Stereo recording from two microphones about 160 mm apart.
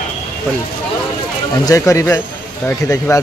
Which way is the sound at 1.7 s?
20° left (ahead or behind).